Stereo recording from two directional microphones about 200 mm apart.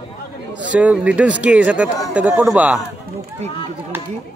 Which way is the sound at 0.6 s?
5° right (ahead or behind).